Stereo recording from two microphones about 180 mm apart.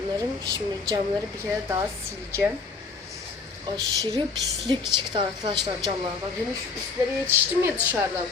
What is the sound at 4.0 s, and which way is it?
A woman's voice, 20° right (ahead or behind).